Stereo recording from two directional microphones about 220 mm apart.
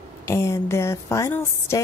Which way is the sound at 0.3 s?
10° left (ahead or behind).